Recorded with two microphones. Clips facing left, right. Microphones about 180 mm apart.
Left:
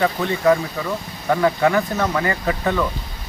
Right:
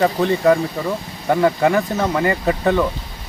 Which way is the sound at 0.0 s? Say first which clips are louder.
Right 3 dB; 35° right (ahead or behind).